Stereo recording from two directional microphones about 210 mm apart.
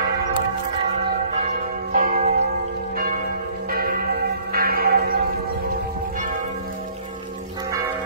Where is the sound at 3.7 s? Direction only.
45° right (ahead or behind).